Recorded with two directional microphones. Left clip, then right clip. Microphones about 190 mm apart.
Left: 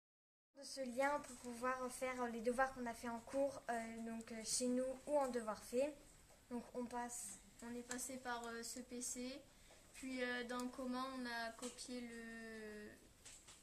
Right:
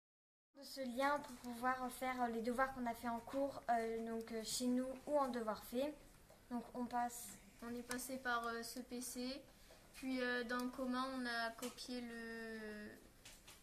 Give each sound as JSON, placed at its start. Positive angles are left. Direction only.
{"t": 0.9, "sound": "a woman's voice", "side_deg": 20}
{"t": 4.4, "sound": "speech", "side_deg": 0}
{"t": 4.7, "sound": "a woman's voice", "side_deg": 25}
{"t": 8.1, "sound": "speech", "side_deg": 10}